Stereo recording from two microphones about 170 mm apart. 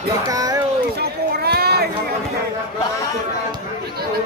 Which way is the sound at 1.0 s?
65° right (ahead or behind).